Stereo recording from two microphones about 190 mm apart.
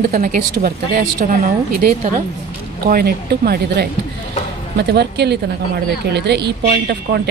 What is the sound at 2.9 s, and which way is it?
A woman's voice, 55° right (ahead or behind).